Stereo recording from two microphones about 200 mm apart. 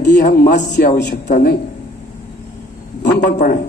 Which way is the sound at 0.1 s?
45° left (ahead or behind).